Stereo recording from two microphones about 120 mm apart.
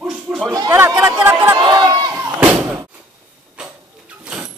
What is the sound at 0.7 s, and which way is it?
Speech, 15° right (ahead or behind).